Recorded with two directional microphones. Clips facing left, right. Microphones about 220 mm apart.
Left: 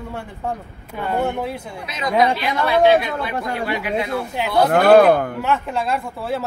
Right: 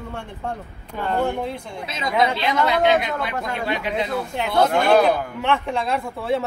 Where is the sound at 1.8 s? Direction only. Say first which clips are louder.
Left 3 dB; 25° right (ahead or behind).